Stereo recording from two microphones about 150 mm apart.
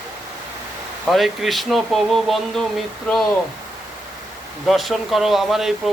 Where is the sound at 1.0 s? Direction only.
Centre (ahead or behind).